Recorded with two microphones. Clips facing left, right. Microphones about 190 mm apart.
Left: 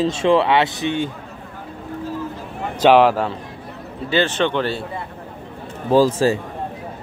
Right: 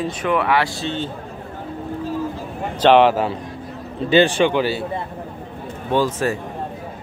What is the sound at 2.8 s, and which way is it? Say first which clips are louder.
Speech: even; centre (ahead or behind).